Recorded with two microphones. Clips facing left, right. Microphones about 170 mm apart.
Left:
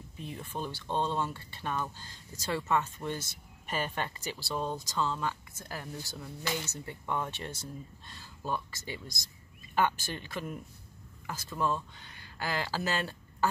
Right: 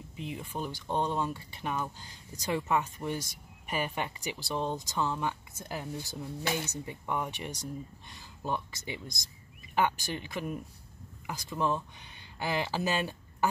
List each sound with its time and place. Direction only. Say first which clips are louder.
0.2 s speech: right 1 dB; 10° right (ahead or behind)